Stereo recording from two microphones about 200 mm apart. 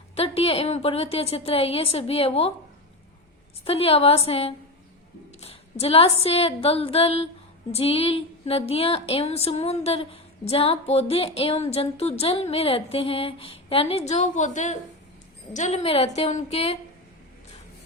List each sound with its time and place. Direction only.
0.2 s a woman's voice: 30° left (ahead or behind)
3.6 s a woman's voice: 30° left (ahead or behind)